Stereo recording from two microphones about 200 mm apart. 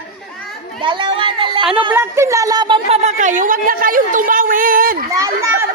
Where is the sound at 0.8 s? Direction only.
25° right (ahead or behind).